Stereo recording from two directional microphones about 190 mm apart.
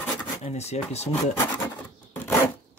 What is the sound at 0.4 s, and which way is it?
Speech, 35° left (ahead or behind).